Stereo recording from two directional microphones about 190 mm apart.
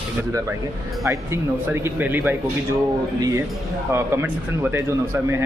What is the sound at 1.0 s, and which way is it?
Speech, 15° right (ahead or behind).